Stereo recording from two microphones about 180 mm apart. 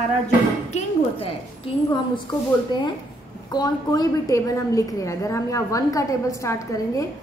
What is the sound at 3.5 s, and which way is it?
A woman's voice, 20° left (ahead or behind).